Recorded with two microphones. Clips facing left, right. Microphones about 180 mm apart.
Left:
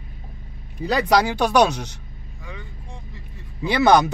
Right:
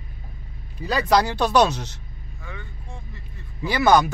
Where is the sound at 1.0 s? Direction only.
15° left (ahead or behind).